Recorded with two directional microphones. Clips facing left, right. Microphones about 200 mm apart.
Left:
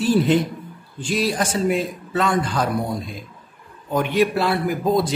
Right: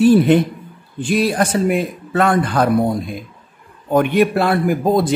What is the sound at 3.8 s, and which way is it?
Speech, 55° right (ahead or behind).